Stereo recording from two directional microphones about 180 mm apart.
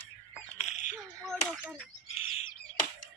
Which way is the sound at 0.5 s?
40° left (ahead or behind).